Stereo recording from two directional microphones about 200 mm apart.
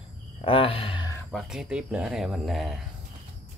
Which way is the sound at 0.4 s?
25° left (ahead or behind).